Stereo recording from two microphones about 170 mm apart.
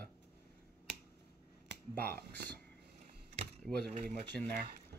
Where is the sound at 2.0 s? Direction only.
65° right (ahead or behind).